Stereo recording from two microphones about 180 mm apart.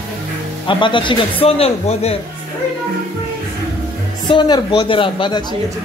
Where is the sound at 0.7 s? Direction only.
25° left (ahead or behind).